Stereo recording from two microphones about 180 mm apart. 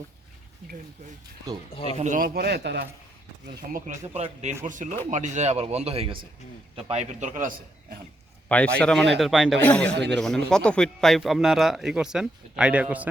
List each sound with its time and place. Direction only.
2.0 s a man's voice: 45° right (ahead or behind)
8.4 s a man's voice: 5° left (ahead or behind)